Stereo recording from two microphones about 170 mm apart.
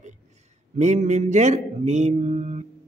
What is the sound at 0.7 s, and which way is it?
A man's voice, 45° right (ahead or behind).